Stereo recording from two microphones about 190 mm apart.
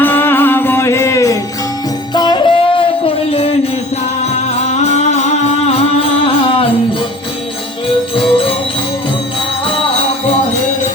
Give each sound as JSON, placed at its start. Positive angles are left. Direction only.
{"t": 0.0, "sound": "music", "side_deg": 10}
{"t": 4.8, "sound": "music", "side_deg": 35}
{"t": 8.1, "sound": "music", "side_deg": 30}